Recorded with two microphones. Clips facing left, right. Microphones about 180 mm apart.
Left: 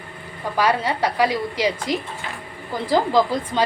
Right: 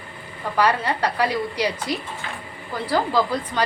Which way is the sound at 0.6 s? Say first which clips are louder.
Left 1 dB; 10° left (ahead or behind).